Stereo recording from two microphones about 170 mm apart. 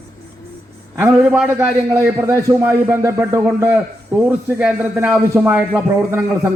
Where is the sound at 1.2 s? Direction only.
5° right (ahead or behind).